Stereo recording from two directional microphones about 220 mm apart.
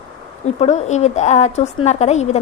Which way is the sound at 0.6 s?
30° left (ahead or behind).